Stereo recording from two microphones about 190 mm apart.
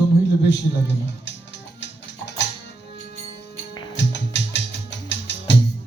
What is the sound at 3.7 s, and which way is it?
Music, 20° left (ahead or behind).